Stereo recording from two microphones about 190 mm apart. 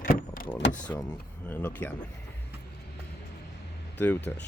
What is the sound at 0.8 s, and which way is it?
Speech, 5° left (ahead or behind).